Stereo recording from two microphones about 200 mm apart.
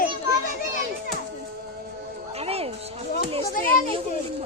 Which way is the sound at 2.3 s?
30° right (ahead or behind).